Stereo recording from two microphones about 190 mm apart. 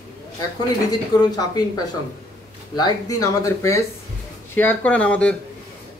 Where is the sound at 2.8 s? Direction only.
20° left (ahead or behind).